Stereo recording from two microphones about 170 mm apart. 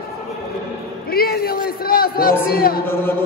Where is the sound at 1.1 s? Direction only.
65° left (ahead or behind).